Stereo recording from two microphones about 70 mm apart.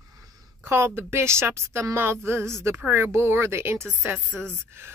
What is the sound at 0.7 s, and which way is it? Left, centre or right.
A woman's voice, right.